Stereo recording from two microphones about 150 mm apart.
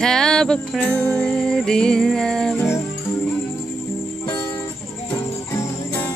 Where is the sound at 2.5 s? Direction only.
20° left (ahead or behind).